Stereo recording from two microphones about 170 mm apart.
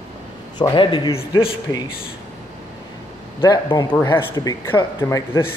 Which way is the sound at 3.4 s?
25° left (ahead or behind).